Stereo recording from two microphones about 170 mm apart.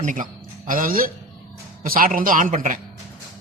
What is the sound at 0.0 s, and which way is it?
Speech, 50° right (ahead or behind).